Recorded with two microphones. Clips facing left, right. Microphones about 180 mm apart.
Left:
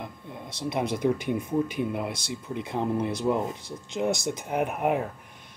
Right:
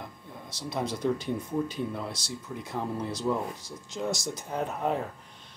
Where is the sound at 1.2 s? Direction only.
15° left (ahead or behind).